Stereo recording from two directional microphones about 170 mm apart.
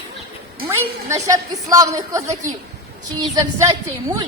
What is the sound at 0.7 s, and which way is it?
A woman's voice, 15° right (ahead or behind).